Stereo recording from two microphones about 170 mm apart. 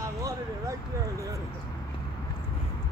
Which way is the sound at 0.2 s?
20° right (ahead or behind).